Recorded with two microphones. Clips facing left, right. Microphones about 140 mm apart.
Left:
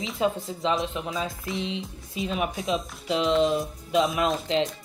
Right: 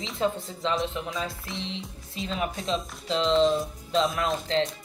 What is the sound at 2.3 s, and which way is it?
Speech, 15° left (ahead or behind).